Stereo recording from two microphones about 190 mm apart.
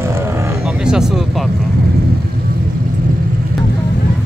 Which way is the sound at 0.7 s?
5° right (ahead or behind).